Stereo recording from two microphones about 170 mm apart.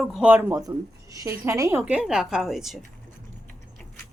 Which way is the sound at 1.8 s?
5° right (ahead or behind).